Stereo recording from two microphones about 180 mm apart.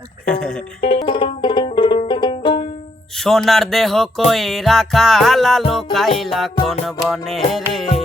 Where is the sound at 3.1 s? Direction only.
Centre (ahead or behind).